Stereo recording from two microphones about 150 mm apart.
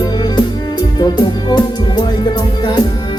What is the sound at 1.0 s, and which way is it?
Music, 30° left (ahead or behind).